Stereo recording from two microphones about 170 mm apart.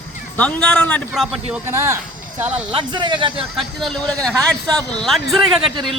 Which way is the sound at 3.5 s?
Centre (ahead or behind).